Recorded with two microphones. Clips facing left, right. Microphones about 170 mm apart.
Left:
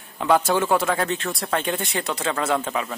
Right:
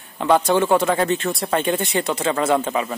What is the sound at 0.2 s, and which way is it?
Speech, centre (ahead or behind).